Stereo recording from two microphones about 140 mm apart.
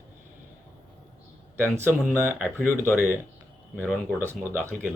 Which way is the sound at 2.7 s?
15° left (ahead or behind).